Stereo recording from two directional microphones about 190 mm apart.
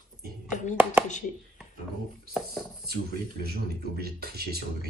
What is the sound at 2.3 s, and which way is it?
Speech, centre (ahead or behind).